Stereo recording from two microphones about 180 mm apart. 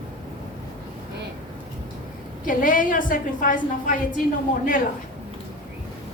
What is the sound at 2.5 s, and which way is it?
A woman's voice, 50° left (ahead or behind).